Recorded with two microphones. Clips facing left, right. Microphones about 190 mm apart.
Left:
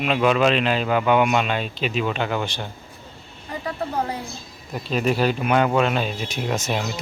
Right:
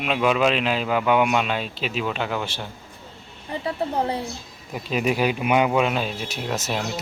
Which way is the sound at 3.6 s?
30° right (ahead or behind).